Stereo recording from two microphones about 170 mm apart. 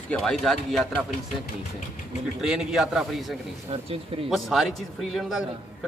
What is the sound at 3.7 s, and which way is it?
Speech, 35° right (ahead or behind).